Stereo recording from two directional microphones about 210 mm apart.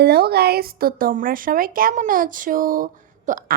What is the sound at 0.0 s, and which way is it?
A woman's voice, 50° right (ahead or behind).